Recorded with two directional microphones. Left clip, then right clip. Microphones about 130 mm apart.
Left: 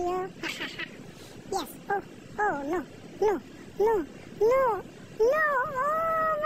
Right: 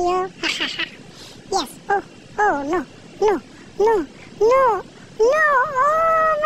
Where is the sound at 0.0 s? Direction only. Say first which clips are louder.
Right 10 dB; 25° right (ahead or behind).